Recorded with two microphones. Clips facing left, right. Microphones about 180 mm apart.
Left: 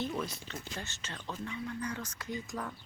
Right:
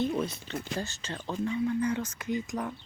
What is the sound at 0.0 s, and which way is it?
Speech, 20° right (ahead or behind).